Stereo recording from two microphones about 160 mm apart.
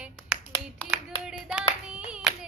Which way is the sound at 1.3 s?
5° right (ahead or behind).